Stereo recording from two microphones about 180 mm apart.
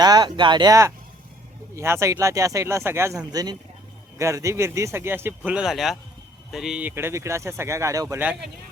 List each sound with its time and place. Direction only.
0.0 s speech: 25° right (ahead or behind)